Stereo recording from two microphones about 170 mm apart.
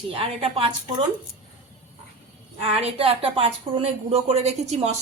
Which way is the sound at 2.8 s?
35° right (ahead or behind).